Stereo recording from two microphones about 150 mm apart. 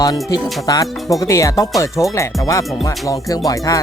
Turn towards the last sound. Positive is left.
turn(degrees=20)  # may be behind; listen again after turning